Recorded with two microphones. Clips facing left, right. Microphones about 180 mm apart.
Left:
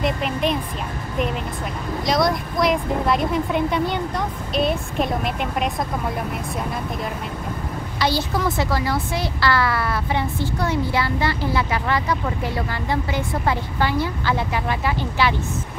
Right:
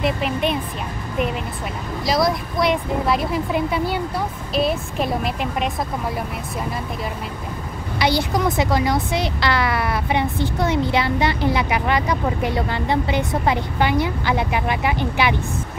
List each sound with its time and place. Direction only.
0.0 s speech: centre (ahead or behind)
2.0 s speech: centre (ahead or behind)
8.0 s speech: 15° right (ahead or behind)